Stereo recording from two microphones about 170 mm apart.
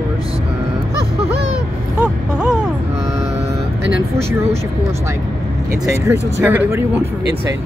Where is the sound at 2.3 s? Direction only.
5° right (ahead or behind).